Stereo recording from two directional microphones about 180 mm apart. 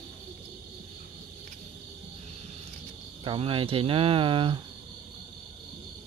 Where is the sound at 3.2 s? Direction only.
30° right (ahead or behind).